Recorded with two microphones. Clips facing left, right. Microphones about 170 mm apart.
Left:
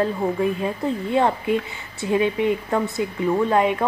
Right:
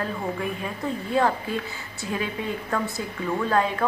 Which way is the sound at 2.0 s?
25° left (ahead or behind).